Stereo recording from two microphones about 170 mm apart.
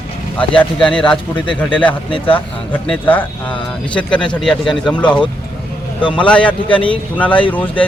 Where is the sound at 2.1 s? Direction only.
30° left (ahead or behind).